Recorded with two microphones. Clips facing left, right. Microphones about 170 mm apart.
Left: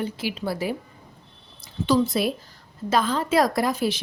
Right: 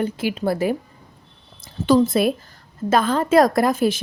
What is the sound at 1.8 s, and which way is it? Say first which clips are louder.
A woman's voice: right 5 dB; 50° right (ahead or behind).